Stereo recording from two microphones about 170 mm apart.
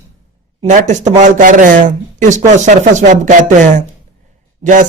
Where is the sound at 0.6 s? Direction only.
45° right (ahead or behind).